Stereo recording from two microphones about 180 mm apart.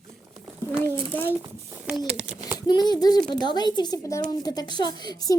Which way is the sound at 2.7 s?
25° left (ahead or behind).